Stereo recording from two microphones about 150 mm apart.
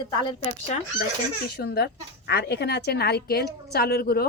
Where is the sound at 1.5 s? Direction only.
90° left.